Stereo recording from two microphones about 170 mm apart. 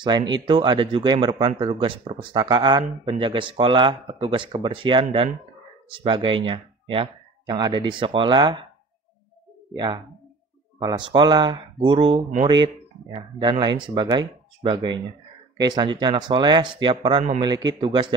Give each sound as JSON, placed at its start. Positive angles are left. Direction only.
{"t": 0.0, "sound": "speech", "side_deg": -25}
{"t": 10.8, "sound": "speech", "side_deg": -25}